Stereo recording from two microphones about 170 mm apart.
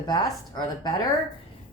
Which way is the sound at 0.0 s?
25° left (ahead or behind).